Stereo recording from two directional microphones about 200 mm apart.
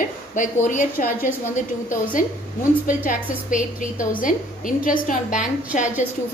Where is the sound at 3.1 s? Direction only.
40° left (ahead or behind).